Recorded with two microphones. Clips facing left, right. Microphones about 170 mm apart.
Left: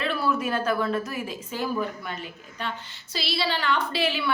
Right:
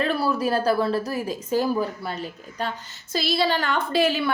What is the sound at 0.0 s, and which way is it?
A woman's voice, 40° right (ahead or behind).